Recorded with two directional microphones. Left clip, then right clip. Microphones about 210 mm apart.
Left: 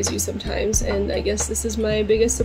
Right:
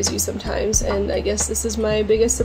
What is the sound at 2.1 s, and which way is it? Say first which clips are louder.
Speech: right 1 dB; 35° right (ahead or behind).